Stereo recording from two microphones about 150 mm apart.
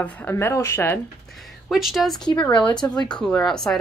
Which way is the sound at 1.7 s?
Centre (ahead or behind).